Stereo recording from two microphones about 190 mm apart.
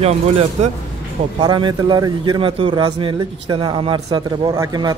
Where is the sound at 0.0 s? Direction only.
35° right (ahead or behind).